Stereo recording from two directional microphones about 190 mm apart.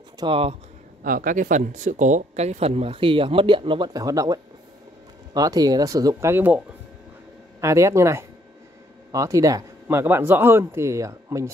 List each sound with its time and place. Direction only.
0.2 s speech: 30° right (ahead or behind)
1.0 s speech: 45° right (ahead or behind); by 6.6 s 10° right (ahead or behind)
7.6 s speech: 15° right (ahead or behind)